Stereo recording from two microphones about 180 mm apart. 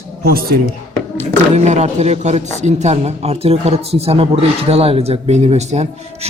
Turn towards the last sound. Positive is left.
turn(degrees=-35)  # may be behind; listen again after turning